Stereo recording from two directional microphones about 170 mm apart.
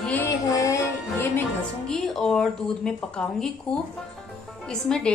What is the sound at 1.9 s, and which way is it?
Speech, centre (ahead or behind).